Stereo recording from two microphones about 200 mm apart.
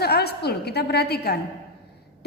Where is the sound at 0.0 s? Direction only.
50° left (ahead or behind).